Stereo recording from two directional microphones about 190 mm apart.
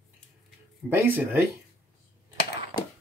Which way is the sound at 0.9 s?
10° right (ahead or behind).